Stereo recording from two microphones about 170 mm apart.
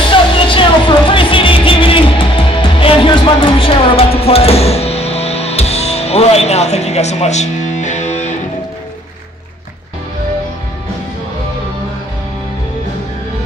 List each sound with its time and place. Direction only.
0.1 s music: 30° left (ahead or behind)